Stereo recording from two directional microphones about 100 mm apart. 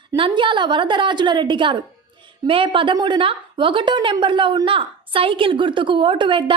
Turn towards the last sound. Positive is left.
turn(degrees=-55)  # may be behind; listen again after turning